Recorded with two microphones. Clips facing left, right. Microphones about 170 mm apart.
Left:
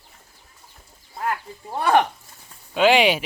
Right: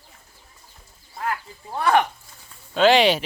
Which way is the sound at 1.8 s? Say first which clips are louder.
Left 1 dB; 30° left (ahead or behind).